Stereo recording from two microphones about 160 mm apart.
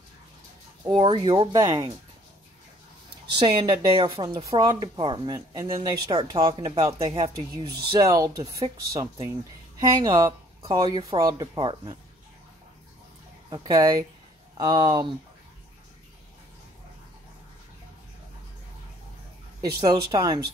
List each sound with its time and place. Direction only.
0.8 s speech: 30° right (ahead or behind)
3.4 s speech: 30° right (ahead or behind)
7.3 s speech: 20° right (ahead or behind)
13.5 s speech: 20° right (ahead or behind)
19.8 s speech: 25° right (ahead or behind)